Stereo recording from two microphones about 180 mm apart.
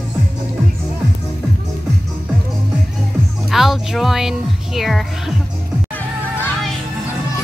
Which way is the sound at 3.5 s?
Centre (ahead or behind).